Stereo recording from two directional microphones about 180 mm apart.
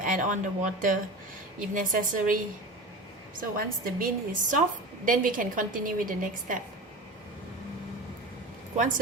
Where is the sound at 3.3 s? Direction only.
50° right (ahead or behind).